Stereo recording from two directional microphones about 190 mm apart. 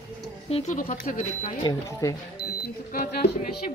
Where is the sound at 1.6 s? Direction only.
20° left (ahead or behind).